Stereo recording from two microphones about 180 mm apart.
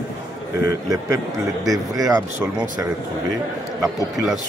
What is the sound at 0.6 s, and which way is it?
Speech, 20° right (ahead or behind).